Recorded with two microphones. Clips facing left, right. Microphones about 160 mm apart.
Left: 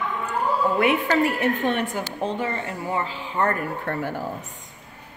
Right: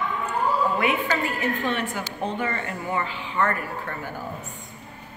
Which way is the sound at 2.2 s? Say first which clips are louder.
Left 1 dB; 25° left (ahead or behind).